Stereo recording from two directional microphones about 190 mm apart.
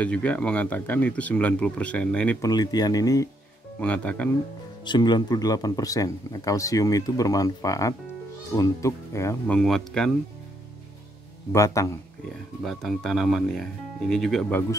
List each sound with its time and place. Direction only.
0.0 s speech: 5° left (ahead or behind)
2.4 s speech: 20° left (ahead or behind)
3.8 s speech: 5° left (ahead or behind)
4.8 s speech: 25° left (ahead or behind)
9.6 s speech: centre (ahead or behind)
11.5 s speech: 15° left (ahead or behind)
12.6 s speech: centre (ahead or behind)